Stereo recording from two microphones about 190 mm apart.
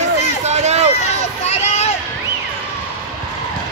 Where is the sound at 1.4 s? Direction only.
35° left (ahead or behind).